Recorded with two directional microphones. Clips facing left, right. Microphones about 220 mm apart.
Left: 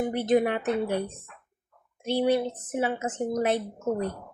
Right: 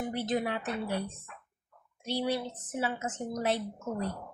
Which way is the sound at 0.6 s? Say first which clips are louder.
Left 7 dB; 50° left (ahead or behind).